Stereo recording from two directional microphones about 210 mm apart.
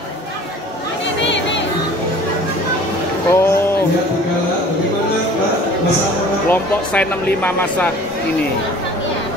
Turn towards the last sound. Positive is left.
turn(degrees=5)  # may be behind; listen again after turning